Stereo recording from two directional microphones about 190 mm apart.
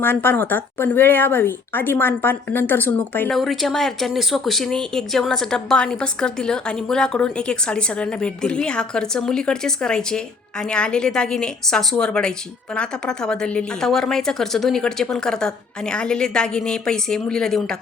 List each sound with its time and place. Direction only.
0.0 s speech: 10° left (ahead or behind)